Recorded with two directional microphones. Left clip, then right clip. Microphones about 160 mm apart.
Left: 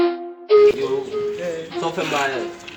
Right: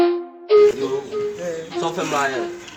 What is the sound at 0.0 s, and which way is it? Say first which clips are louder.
Music: right 2 dB; centre (ahead or behind).